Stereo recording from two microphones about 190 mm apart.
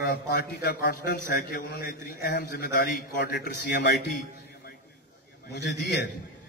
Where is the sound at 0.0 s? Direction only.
55° left (ahead or behind).